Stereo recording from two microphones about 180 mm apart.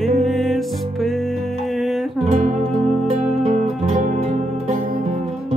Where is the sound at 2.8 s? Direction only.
Centre (ahead or behind).